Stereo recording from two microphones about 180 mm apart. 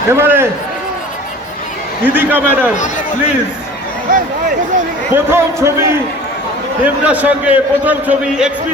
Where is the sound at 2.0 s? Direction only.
10° right (ahead or behind).